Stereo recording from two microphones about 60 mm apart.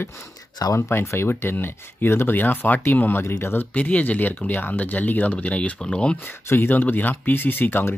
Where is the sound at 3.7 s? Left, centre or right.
Left.